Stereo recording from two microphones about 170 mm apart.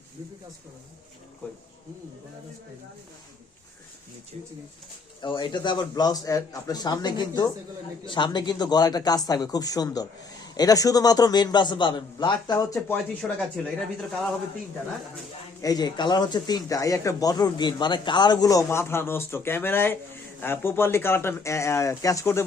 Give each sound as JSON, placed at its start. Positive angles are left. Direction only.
{"t": 5.2, "sound": "speech", "side_deg": 30}
{"t": 13.2, "sound": "speech", "side_deg": 5}
{"t": 15.6, "sound": "speech", "side_deg": 25}